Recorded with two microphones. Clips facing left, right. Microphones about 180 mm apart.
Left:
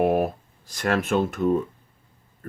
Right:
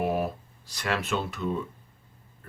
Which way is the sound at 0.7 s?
50° left (ahead or behind).